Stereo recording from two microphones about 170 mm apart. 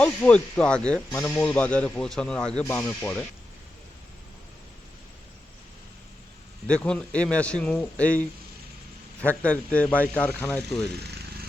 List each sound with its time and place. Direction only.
0.0 s speech: 5° left (ahead or behind)
6.7 s speech: 5° left (ahead or behind)
11.0 s a sound: 75° right (ahead or behind)